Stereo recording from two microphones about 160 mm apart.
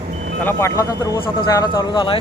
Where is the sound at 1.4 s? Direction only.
25° left (ahead or behind).